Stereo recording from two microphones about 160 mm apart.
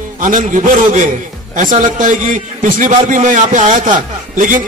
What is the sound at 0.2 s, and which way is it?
Speech, 55° right (ahead or behind).